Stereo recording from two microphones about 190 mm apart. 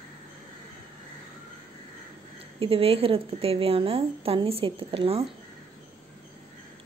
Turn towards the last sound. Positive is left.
turn(degrees=-30)  # may be behind; listen again after turning